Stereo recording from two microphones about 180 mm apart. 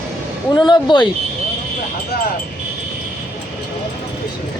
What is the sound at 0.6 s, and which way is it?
Speech, 25° left (ahead or behind).